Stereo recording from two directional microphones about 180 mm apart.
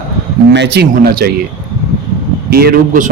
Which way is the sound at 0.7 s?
60° right (ahead or behind).